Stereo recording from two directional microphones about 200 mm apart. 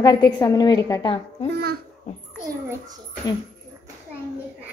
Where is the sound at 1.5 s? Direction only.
50° right (ahead or behind).